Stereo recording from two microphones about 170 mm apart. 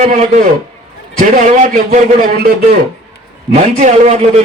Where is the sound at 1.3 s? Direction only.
45° right (ahead or behind).